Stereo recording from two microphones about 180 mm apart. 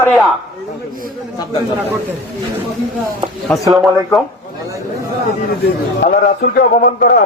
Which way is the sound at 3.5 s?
5° left (ahead or behind).